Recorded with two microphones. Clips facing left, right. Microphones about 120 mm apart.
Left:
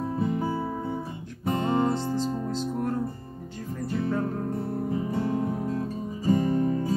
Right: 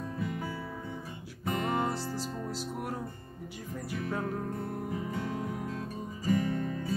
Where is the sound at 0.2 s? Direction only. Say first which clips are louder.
Left 9 dB; 30° left (ahead or behind).